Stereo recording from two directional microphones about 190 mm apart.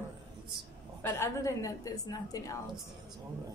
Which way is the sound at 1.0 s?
15° left (ahead or behind).